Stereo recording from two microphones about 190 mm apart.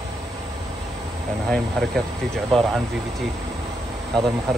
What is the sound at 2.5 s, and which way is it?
Speech, centre (ahead or behind).